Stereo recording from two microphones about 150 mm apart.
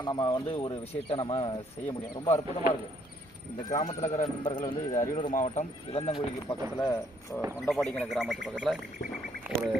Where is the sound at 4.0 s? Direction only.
50° left (ahead or behind).